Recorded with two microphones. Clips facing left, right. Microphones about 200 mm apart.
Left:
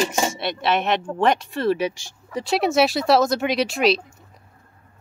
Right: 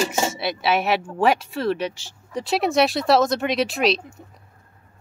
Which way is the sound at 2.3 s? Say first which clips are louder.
Left 1 dB; centre (ahead or behind).